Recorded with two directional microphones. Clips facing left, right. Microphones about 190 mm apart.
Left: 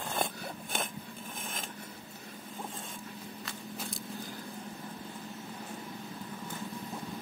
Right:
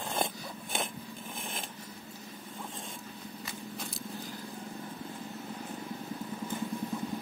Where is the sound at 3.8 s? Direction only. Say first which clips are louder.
Even; centre (ahead or behind).